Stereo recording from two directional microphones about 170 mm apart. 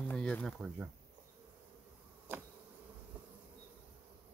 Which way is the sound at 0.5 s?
5° right (ahead or behind).